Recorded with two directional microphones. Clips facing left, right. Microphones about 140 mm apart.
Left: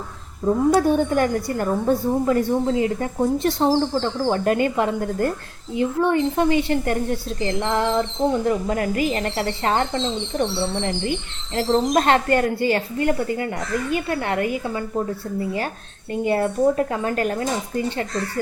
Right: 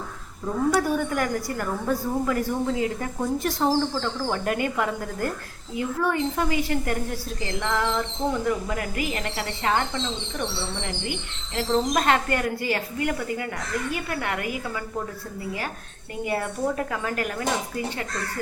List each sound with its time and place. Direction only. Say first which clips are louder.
0.4 s a woman's voice: left 6 dB; 25° left (ahead or behind)
11.5 s a woman's voice: left 4 dB; 35° left (ahead or behind)